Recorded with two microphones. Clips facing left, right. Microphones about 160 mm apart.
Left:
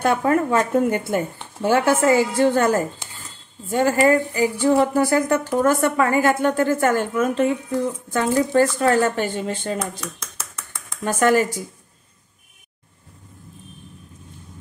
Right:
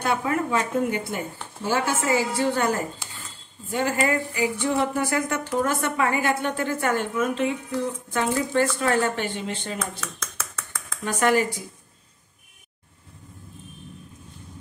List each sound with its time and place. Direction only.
0.0 s speech: 50° left (ahead or behind)
3.7 s speech: 40° left (ahead or behind)
8.5 s speech: 40° left (ahead or behind)
9.9 s a sound: 25° left (ahead or behind)
11.1 s speech: 45° left (ahead or behind)